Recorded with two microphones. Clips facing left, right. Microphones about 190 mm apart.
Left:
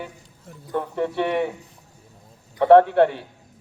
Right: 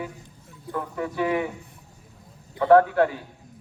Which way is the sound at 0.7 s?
30° left (ahead or behind).